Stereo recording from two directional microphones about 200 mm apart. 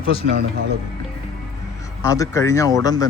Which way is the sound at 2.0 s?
15° left (ahead or behind).